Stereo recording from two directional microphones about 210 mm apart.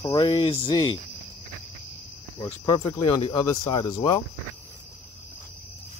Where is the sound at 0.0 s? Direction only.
20° left (ahead or behind).